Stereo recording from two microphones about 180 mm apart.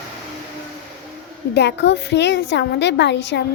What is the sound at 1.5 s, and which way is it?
A woman's voice, 70° left (ahead or behind).